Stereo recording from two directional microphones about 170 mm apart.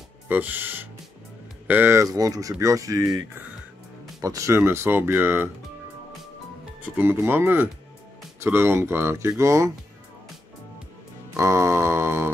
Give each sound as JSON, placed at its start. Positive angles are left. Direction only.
{"t": 0.3, "sound": "speech", "side_deg": -10}
{"t": 6.8, "sound": "speech", "side_deg": -10}
{"t": 11.3, "sound": "a sound", "side_deg": -15}